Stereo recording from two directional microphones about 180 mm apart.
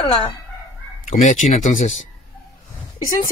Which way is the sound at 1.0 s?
45° left (ahead or behind).